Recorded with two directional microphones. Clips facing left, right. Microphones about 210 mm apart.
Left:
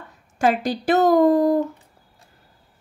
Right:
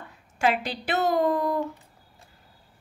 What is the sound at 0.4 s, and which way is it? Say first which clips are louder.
Speech: left 5 dB; 45° left (ahead or behind).